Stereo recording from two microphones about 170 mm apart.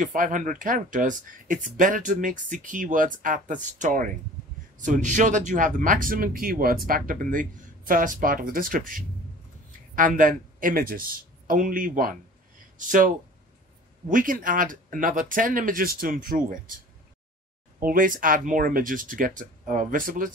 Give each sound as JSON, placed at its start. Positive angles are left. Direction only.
{"t": 0.0, "sound": "speech", "side_deg": -50}